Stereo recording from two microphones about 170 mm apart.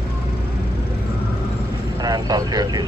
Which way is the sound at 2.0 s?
20° right (ahead or behind).